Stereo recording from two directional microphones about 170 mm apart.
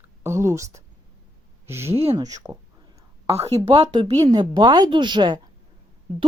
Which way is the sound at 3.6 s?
35° right (ahead or behind).